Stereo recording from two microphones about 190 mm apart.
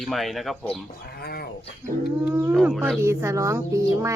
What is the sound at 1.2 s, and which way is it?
Speech, 55° left (ahead or behind).